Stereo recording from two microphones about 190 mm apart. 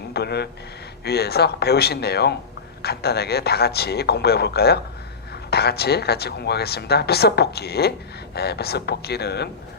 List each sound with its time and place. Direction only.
0.1 s speech: 60° left (ahead or behind)